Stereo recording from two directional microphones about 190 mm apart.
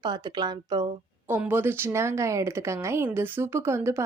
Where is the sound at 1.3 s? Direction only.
10° right (ahead or behind).